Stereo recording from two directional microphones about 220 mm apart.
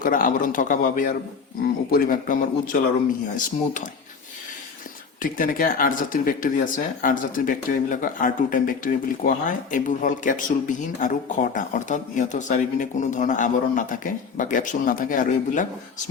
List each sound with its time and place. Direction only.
0.0 s speech: 40° left (ahead or behind)
5.2 s speech: 40° left (ahead or behind)